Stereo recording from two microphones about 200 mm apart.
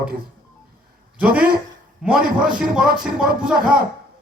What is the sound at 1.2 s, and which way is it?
A man's voice, 5° right (ahead or behind).